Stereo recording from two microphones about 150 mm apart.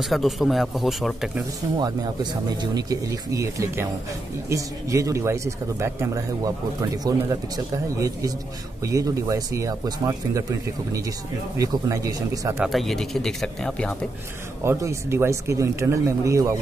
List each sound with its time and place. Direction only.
0.0 s speech: centre (ahead or behind)
2.5 s speech: 30° right (ahead or behind)
12.6 s speech: centre (ahead or behind)
14.6 s speech: 20° right (ahead or behind)